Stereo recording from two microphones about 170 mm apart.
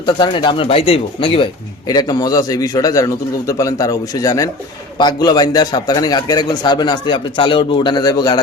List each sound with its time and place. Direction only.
0.0 s speech: 30° left (ahead or behind)
1.9 s a man's voice: 20° left (ahead or behind)